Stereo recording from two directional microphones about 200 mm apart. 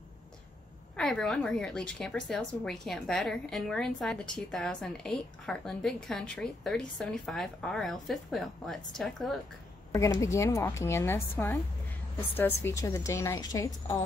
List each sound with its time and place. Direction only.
0.9 s a woman's voice: 5° left (ahead or behind)
9.9 s a woman's voice: 15° left (ahead or behind)